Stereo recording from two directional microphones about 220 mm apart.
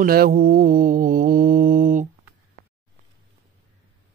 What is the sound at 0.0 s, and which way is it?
Mantra, 45° right (ahead or behind).